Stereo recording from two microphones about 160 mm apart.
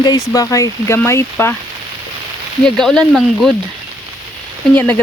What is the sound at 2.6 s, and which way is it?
Speech, centre (ahead or behind).